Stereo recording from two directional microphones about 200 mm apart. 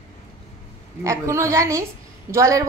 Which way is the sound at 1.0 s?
15° right (ahead or behind).